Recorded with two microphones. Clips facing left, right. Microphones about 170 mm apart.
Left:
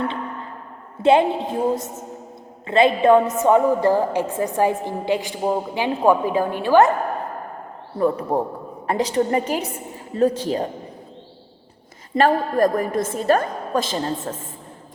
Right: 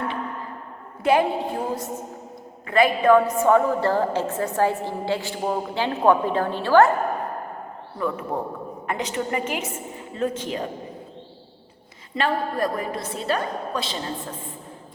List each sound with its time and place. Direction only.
1.0 s a woman's voice: 25° left (ahead or behind)
7.9 s a woman's voice: 35° left (ahead or behind)
12.1 s a woman's voice: 45° left (ahead or behind)